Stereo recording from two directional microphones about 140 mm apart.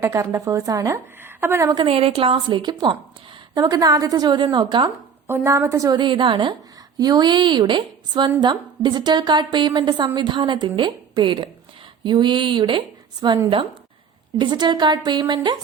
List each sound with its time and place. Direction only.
0.0 s a woman's voice: 20° right (ahead or behind)
1.7 s a woman's voice: 40° right (ahead or behind)
5.3 s a woman's voice: 20° right (ahead or behind)